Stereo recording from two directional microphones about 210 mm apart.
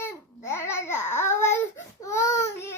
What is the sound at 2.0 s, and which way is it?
Child singing, 15° left (ahead or behind).